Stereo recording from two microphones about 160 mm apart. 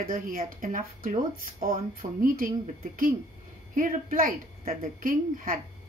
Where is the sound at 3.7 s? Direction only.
55° right (ahead or behind).